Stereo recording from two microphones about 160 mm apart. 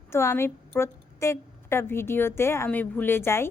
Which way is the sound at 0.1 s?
15° left (ahead or behind).